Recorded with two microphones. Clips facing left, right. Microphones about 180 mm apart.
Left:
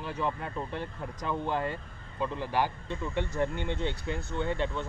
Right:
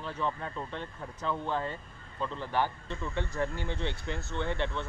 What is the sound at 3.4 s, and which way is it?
Speech, 20° left (ahead or behind).